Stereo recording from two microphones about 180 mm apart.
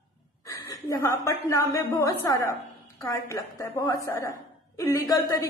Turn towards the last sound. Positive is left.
turn(degrees=15)  # may be behind; listen again after turning